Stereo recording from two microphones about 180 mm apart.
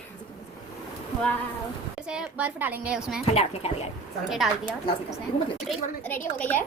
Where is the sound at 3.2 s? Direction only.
35° left (ahead or behind).